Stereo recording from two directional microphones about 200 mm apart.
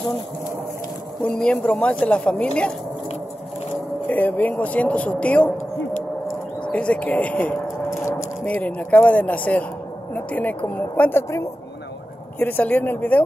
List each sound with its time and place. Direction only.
1.4 s a woman's voice: 5° left (ahead or behind)
4.1 s speech: 10° left (ahead or behind)
6.6 s a sound: 5° left (ahead or behind)
8.5 s speech: 10° left (ahead or behind)